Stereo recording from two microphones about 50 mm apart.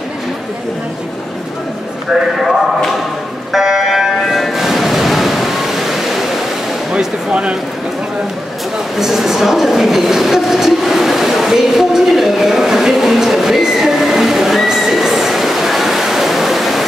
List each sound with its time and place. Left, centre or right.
3.5 s a sound: centre
6.9 s speech: centre
8.9 s speech: centre